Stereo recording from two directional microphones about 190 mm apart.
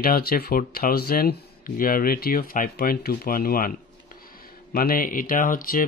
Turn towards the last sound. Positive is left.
turn(degrees=45)  # may be behind; listen again after turning